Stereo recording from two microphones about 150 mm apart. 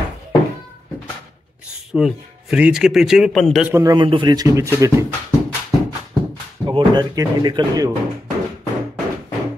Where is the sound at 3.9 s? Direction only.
30° right (ahead or behind).